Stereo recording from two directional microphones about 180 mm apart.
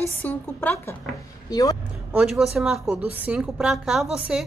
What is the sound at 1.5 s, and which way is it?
Speech, 20° left (ahead or behind).